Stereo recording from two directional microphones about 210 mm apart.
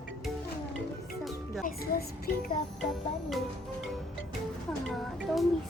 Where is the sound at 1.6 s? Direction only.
45° left (ahead or behind).